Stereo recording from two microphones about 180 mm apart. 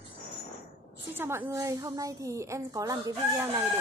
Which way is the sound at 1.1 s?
15° right (ahead or behind).